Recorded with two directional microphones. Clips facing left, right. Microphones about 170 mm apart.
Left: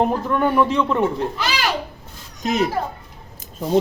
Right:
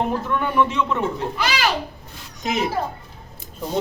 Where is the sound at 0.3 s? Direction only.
35° left (ahead or behind).